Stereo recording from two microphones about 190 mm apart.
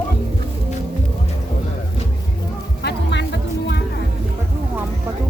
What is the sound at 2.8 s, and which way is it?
Music, 65° left (ahead or behind).